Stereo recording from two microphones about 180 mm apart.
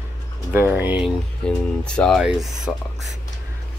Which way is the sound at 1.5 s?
5° left (ahead or behind).